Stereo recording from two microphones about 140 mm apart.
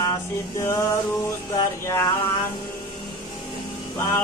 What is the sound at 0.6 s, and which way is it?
Mantra, 20° left (ahead or behind).